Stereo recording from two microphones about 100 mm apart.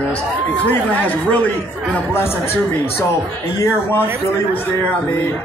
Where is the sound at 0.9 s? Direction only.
15° left (ahead or behind).